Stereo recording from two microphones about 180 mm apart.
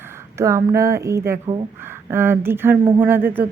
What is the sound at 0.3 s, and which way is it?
Speech, 15° right (ahead or behind).